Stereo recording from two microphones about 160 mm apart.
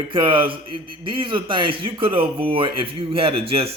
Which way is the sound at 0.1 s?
30° right (ahead or behind).